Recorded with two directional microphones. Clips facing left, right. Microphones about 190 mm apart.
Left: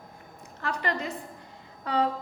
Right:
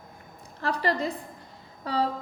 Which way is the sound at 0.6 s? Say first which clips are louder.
Right 4 dB; 35° right (ahead or behind).